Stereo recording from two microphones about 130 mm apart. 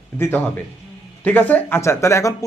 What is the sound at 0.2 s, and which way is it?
Speech, 15° left (ahead or behind).